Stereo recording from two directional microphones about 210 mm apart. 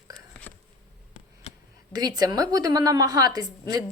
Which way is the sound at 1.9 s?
20° right (ahead or behind).